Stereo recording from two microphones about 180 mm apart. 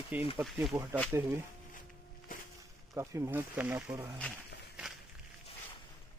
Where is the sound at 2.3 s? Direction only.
50° left (ahead or behind).